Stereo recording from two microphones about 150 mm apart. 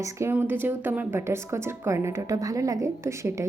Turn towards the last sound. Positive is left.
turn(degrees=-20)  # may be behind; listen again after turning